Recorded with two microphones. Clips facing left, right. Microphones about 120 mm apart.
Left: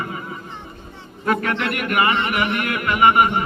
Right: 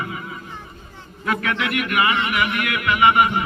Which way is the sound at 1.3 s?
45° left (ahead or behind).